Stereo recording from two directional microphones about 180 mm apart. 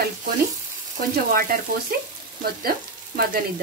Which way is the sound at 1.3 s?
55° right (ahead or behind).